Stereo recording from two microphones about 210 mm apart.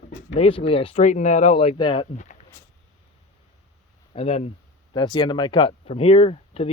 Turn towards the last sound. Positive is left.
turn(degrees=25)  # may be behind; listen again after turning